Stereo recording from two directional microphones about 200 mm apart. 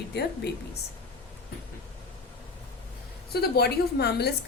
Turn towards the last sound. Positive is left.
turn(degrees=55)  # may be behind; listen again after turning